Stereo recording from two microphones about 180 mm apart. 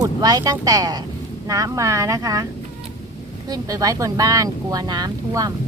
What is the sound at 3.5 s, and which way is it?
Speech, 20° right (ahead or behind).